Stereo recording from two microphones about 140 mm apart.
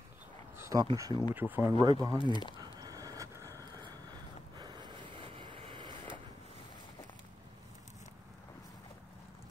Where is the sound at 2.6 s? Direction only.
25° right (ahead or behind).